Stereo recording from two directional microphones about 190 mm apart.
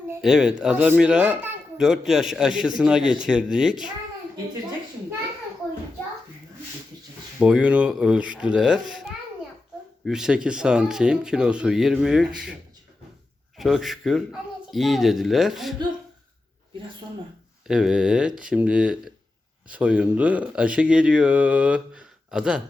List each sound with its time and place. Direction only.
0.2 s a child's voice: 5° right (ahead or behind)
7.3 s a child's voice: 5° right (ahead or behind)
13.6 s a child's voice: centre (ahead or behind)
17.7 s a child's voice: 5° right (ahead or behind)